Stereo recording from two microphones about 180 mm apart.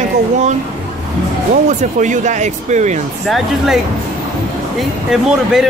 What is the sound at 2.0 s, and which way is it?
Speech, 45° right (ahead or behind).